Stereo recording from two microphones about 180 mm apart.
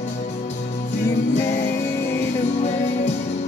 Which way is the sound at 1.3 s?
75° left (ahead or behind).